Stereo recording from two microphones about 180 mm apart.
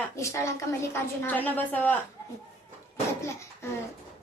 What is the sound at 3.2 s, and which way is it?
Speech, 15° left (ahead or behind).